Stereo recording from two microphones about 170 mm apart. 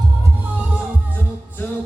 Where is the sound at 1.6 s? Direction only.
10° left (ahead or behind).